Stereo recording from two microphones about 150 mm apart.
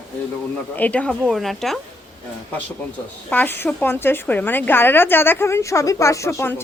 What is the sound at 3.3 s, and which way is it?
A woman's voice, 15° left (ahead or behind).